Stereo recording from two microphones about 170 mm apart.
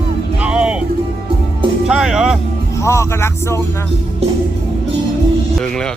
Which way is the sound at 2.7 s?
15° left (ahead or behind).